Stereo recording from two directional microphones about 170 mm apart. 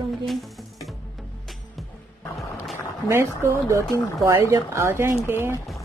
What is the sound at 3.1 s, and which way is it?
Speech, 15° right (ahead or behind).